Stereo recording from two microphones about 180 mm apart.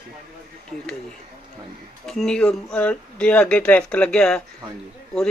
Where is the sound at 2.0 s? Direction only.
Centre (ahead or behind).